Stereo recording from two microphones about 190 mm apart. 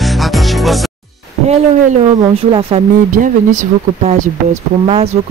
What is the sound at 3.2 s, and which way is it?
Speech, 45° right (ahead or behind).